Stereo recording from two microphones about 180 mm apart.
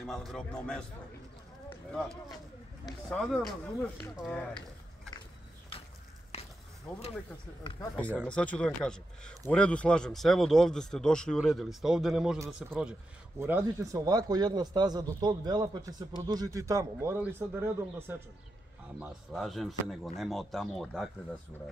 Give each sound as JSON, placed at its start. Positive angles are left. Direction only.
{"t": 0.0, "sound": "a man's voice", "side_deg": 0}
{"t": 2.8, "sound": "a man's voice", "side_deg": 0}
{"t": 5.7, "sound": "a sound", "side_deg": 30}
{"t": 6.9, "sound": "a man's voice", "side_deg": 5}